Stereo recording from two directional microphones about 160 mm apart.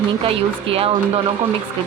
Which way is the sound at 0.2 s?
35° right (ahead or behind).